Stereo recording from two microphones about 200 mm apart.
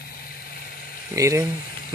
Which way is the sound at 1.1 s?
15° right (ahead or behind).